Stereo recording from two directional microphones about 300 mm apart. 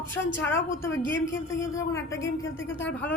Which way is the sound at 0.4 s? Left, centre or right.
Centre.